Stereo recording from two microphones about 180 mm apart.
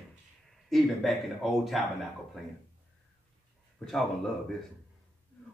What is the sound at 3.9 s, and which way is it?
Speech, centre (ahead or behind).